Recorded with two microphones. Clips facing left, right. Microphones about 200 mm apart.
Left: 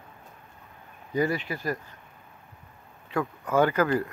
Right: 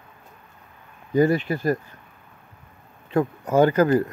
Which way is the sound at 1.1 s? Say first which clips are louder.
Right 7 dB; 50° right (ahead or behind).